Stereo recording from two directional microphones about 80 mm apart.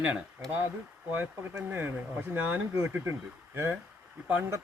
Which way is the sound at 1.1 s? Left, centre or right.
Right.